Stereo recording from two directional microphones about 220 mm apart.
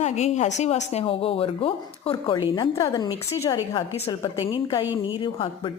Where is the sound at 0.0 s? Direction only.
30° left (ahead or behind).